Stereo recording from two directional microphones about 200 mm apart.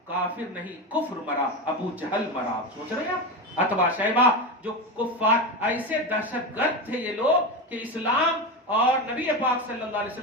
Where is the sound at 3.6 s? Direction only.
10° right (ahead or behind).